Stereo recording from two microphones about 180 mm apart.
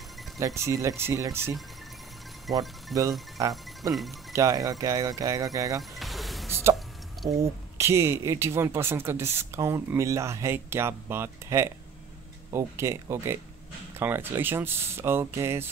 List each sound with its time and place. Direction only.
0.4 s speech: 15° right (ahead or behind)
2.5 s speech: centre (ahead or behind)
3.3 s speech: 20° right (ahead or behind)
5.8 s music: centre (ahead or behind)
6.5 s hiccup: 15° right (ahead or behind)
7.2 s speech: 15° right (ahead or behind)